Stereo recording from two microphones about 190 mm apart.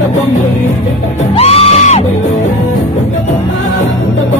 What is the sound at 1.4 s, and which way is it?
Music, 30° left (ahead or behind).